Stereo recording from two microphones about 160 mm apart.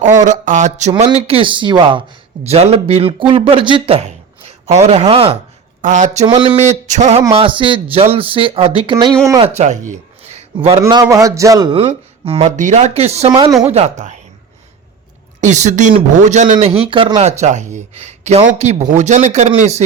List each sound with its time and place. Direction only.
0.0 s speech: 50° right (ahead or behind)
5.8 s speech: 50° right (ahead or behind)
6.2 s speech: 30° right (ahead or behind)
6.6 s speech: 45° right (ahead or behind); by 9.1 s 30° right (ahead or behind)
9.6 s a sound: 50° right (ahead or behind)
10.8 s a man's voice: 20° right (ahead or behind)
11.7 s speech: 35° right (ahead or behind)
15.4 s speech: 50° right (ahead or behind)
16.6 s speech: 35° right (ahead or behind)